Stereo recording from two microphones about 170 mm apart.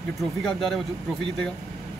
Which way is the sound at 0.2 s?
Centre (ahead or behind).